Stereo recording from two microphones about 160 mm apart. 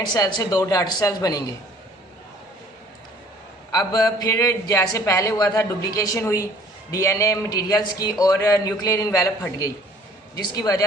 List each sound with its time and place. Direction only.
0.1 s a man's voice: 25° left (ahead or behind)
3.7 s a man's voice: 20° left (ahead or behind)